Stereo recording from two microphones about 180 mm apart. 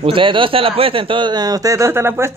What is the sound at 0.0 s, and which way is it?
Speech, 30° right (ahead or behind).